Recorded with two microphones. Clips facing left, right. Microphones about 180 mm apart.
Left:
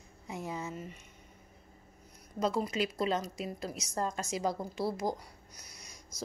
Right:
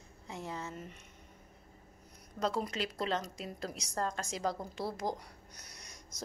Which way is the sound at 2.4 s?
5° left (ahead or behind).